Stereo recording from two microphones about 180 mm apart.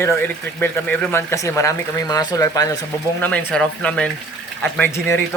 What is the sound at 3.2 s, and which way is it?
Speech, 10° left (ahead or behind).